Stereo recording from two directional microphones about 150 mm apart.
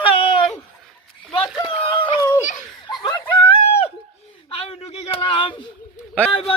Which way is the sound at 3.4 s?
40° left (ahead or behind).